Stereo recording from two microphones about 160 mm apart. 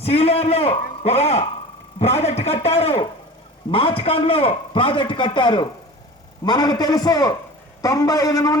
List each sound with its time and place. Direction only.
0.0 s a man's voice: 40° left (ahead or behind); by 8.5 s 20° left (ahead or behind)